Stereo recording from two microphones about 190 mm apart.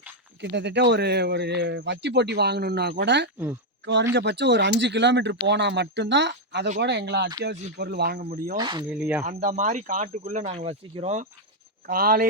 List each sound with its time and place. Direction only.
0.5 s speech: 65° right (ahead or behind)
3.3 s speech: 15° right (ahead or behind)
4.1 s speech: 65° right (ahead or behind)
8.5 s speech: 25° right (ahead or behind)
8.9 s speech: 5° right (ahead or behind)
9.2 s speech: 40° right (ahead or behind)
11.9 s speech: 50° right (ahead or behind)